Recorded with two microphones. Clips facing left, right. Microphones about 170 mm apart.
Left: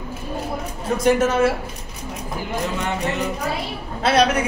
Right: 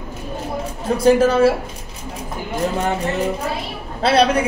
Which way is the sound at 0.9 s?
30° right (ahead or behind).